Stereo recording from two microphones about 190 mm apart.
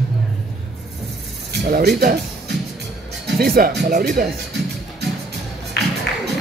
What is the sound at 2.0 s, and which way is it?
Music, 50° right (ahead or behind).